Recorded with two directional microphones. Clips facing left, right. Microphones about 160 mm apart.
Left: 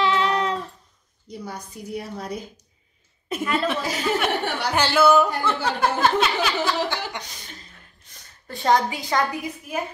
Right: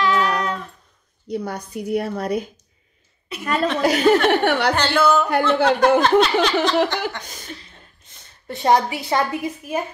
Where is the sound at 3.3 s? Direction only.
45° left (ahead or behind).